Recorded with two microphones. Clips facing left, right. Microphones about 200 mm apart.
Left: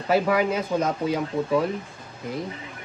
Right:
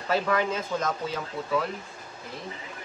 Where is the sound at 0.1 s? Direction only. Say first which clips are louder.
Left 5 dB; 10° left (ahead or behind).